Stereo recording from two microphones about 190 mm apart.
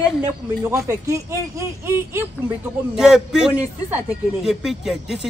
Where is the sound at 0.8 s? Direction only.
15° right (ahead or behind).